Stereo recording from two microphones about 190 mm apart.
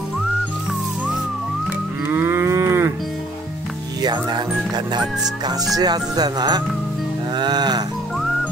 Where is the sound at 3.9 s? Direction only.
20° right (ahead or behind).